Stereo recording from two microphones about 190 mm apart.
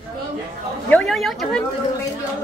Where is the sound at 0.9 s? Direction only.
5° left (ahead or behind).